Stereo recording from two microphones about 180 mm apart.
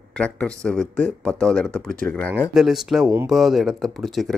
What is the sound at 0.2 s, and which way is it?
Speech, 5° left (ahead or behind).